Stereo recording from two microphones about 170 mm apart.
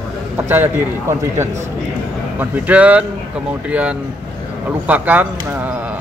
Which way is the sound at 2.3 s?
10° right (ahead or behind).